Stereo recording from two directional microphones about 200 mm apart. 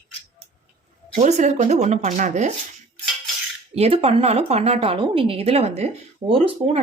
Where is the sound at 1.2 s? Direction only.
35° right (ahead or behind).